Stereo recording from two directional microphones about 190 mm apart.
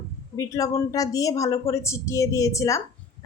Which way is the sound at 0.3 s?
15° left (ahead or behind).